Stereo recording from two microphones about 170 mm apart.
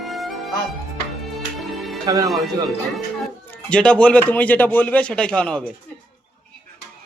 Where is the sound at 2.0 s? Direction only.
20° right (ahead or behind).